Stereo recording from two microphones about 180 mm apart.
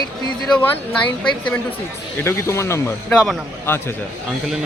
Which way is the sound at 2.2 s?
15° left (ahead or behind).